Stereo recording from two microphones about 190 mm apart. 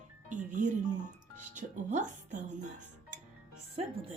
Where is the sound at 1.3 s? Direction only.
40° right (ahead or behind).